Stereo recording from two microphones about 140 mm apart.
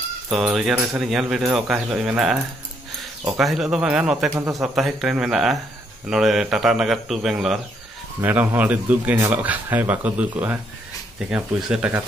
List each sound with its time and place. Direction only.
0.3 s speech: centre (ahead or behind)
4.3 s a man's voice: 20° right (ahead or behind)
4.6 s speech: centre (ahead or behind)